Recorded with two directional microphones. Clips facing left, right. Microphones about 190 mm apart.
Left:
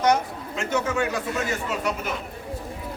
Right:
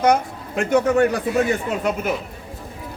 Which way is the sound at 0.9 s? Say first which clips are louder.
Right 8 dB; 55° right (ahead or behind).